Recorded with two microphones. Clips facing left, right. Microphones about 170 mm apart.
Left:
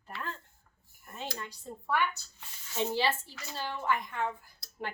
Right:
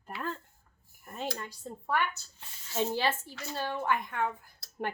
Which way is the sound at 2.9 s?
50° right (ahead or behind).